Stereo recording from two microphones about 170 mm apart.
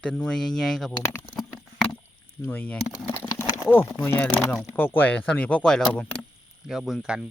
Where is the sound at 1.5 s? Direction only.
5° left (ahead or behind).